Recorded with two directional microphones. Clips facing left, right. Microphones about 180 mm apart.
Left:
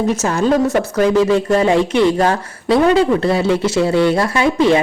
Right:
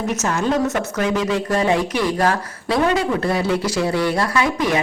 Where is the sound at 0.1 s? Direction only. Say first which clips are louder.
Left 5 dB; 30° left (ahead or behind).